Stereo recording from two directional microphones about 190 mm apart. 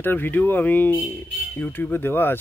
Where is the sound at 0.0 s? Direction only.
10° left (ahead or behind).